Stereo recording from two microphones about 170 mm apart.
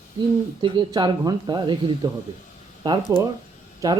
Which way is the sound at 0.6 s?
25° right (ahead or behind).